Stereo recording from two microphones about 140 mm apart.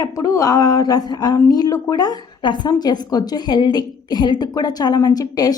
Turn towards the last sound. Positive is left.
turn(degrees=25)  # may be behind; listen again after turning